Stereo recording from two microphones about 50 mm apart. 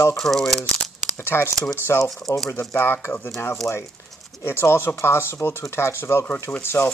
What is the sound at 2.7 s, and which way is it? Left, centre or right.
Speech, left.